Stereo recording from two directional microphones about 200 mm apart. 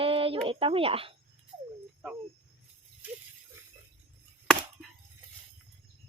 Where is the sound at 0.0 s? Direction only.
30° right (ahead or behind).